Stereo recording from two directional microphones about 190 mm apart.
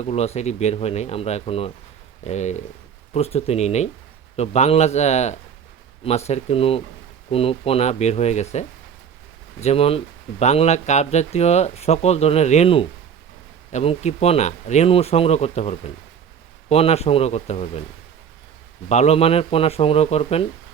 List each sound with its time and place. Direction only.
0.0 s speech: 35° left (ahead or behind)
18.9 s speech: 35° left (ahead or behind)